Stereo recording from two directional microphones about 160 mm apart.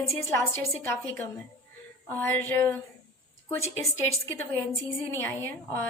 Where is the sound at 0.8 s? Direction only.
10° left (ahead or behind).